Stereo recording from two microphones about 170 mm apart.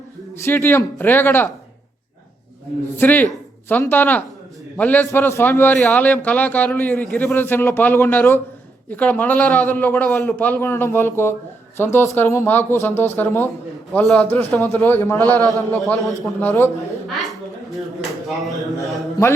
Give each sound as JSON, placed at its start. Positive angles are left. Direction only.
{"t": 0.4, "sound": "a man's voice", "side_deg": 15}
{"t": 2.9, "sound": "a man's voice", "side_deg": 10}
{"t": 15.9, "sound": "speech", "side_deg": 0}
{"t": 16.4, "sound": "a man's voice", "side_deg": 10}
{"t": 17.1, "sound": "speech", "side_deg": 0}
{"t": 19.2, "sound": "music", "side_deg": 20}